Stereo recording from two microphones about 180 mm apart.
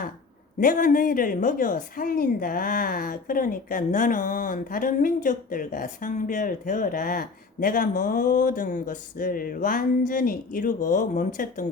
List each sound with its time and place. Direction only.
0.6 s a woman's voice: 50° left (ahead or behind)